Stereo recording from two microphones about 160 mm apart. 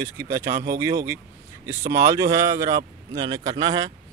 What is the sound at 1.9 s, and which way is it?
Speech, 20° right (ahead or behind).